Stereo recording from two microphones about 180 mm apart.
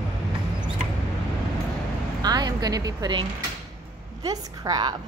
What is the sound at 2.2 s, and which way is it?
A woman's voice, 20° right (ahead or behind).